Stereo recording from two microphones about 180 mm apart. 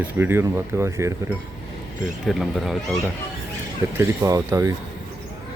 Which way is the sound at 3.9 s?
15° right (ahead or behind).